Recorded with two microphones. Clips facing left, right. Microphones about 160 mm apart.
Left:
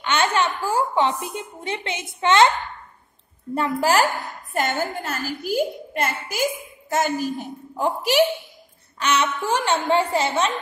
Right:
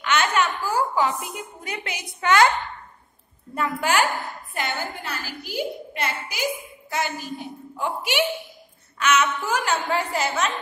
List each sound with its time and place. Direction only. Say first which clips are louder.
0.0 s a woman's voice: left 1 dB; 30° left (ahead or behind)
3.5 s a woman's voice: left 3 dB; 30° left (ahead or behind)